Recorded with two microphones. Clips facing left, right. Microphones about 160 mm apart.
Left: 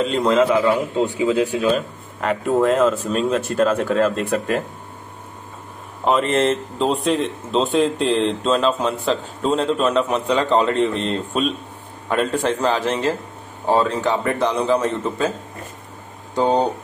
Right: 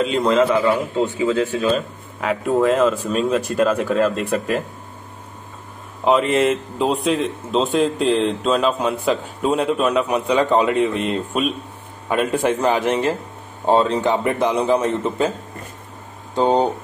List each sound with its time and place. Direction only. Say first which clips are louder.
0.0 s a man's voice: even; centre (ahead or behind)
6.0 s a man's voice: right 1 dB; 5° right (ahead or behind)
16.3 s speech: right 1 dB; 20° right (ahead or behind)